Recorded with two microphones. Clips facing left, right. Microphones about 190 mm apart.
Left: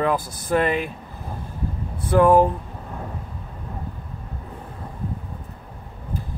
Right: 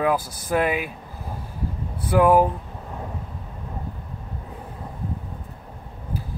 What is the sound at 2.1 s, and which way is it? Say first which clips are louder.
Speech: left 1 dB; 10° right (ahead or behind).